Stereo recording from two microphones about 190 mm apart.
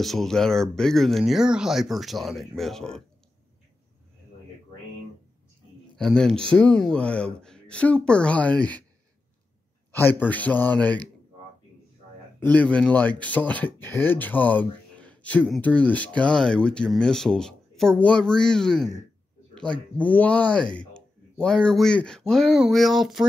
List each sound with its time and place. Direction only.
0.0 s speech: centre (ahead or behind)
5.9 s speech: centre (ahead or behind)
10.2 s speech: 10° left (ahead or behind)
12.4 s speech: 5° left (ahead or behind)